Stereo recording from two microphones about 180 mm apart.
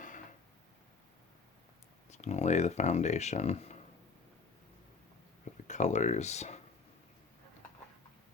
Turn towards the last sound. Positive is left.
turn(degrees=40)  # may be behind; listen again after turning